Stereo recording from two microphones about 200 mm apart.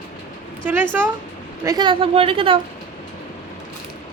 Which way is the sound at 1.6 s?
20° right (ahead or behind).